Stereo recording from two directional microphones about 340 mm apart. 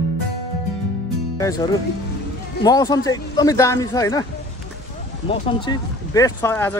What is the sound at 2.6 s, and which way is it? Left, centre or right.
Speech, centre.